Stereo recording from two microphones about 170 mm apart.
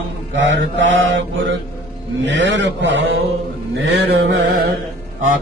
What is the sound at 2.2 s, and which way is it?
A man's voice, 90° right.